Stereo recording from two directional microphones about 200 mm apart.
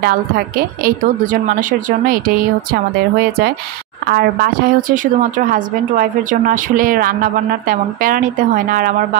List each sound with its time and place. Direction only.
0.0 s a woman's voice: 50° right (ahead or behind)